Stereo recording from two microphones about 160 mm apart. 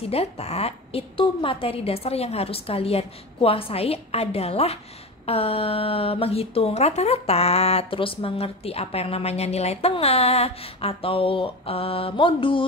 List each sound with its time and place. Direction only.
0.0 s speech: 40° left (ahead or behind)